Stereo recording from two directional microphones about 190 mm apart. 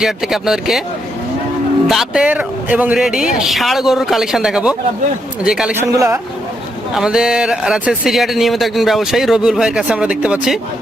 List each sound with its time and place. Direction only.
0.0 s speech: centre (ahead or behind)
1.9 s speech: centre (ahead or behind)
5.9 s a man's voice: 15° right (ahead or behind)
6.9 s speech: 5° right (ahead or behind)